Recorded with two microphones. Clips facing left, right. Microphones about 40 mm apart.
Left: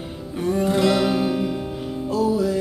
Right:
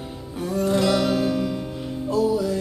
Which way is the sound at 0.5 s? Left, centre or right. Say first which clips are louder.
Left 1 dB; centre.